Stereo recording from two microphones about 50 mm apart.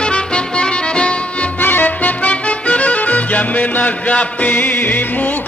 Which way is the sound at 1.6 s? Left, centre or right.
Left.